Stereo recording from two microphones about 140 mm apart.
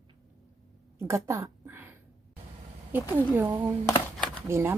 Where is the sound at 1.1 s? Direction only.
20° right (ahead or behind).